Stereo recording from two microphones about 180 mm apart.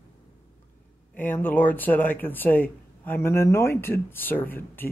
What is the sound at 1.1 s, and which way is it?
Speech, 10° left (ahead or behind).